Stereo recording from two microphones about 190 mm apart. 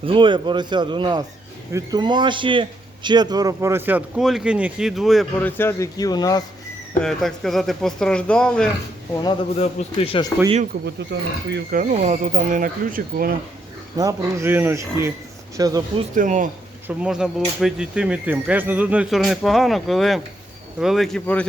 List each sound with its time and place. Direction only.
0.0 s a man's voice: 25° right (ahead or behind); by 5.5 s centre (ahead or behind)
5.5 s a man's voice: 10° left (ahead or behind)
7.0 s speech: centre (ahead or behind)
9.2 s a man's voice: 25° left (ahead or behind)
11.1 s speech: 65° right (ahead or behind)
11.8 s speech: 40° right (ahead or behind)
14.0 s a man's voice: 15° right (ahead or behind)
16.1 s speech: 45° right (ahead or behind)
17.0 s speech: 5° right (ahead or behind)